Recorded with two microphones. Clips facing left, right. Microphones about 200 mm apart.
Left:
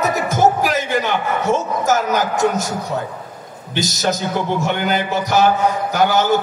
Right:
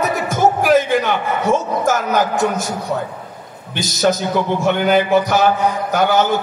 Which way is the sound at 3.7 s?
55° right (ahead or behind).